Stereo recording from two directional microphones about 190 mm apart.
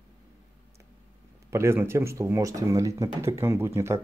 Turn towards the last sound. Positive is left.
turn(degrees=-15)  # may be behind; listen again after turning